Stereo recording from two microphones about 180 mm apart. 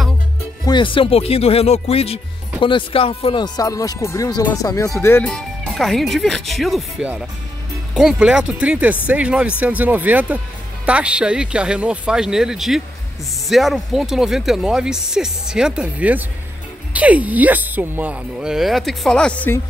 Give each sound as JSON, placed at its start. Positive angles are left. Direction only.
{"t": 0.7, "sound": "speech", "side_deg": 25}
{"t": 5.3, "sound": "speech", "side_deg": 0}